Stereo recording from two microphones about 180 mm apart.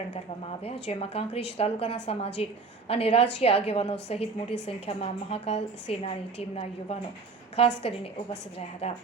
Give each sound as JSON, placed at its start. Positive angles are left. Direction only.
{"t": 0.4, "sound": "a woman's voice", "side_deg": 35}